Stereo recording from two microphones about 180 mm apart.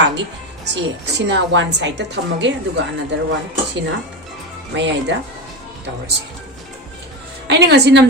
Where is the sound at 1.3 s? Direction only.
90° right.